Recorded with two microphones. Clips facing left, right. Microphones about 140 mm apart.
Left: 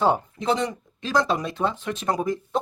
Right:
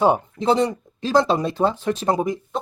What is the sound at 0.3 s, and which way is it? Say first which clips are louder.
Speech: right 5 dB; 35° right (ahead or behind).